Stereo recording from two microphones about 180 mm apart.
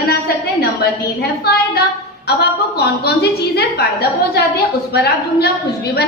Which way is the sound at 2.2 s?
65° left (ahead or behind).